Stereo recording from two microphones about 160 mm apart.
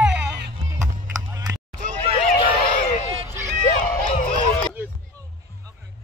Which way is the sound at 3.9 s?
65° left (ahead or behind).